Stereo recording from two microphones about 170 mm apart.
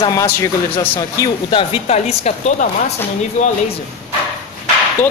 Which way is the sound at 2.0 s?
40° left (ahead or behind).